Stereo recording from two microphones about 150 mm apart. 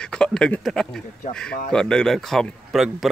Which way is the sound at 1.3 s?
50° left (ahead or behind).